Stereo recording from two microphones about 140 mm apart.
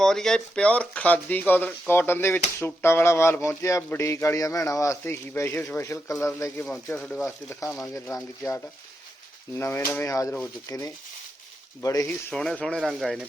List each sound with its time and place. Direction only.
0.0 s speech: 5° left (ahead or behind)
8.1 s speech: 25° left (ahead or behind)
9.6 s speech: 15° left (ahead or behind)
12.3 s speech: 5° left (ahead or behind)